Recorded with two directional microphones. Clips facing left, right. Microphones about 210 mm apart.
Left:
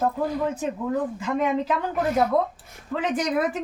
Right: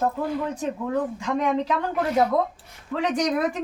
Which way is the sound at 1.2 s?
5° left (ahead or behind).